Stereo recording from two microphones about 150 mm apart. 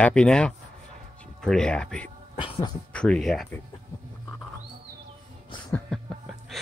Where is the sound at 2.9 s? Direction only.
5° left (ahead or behind).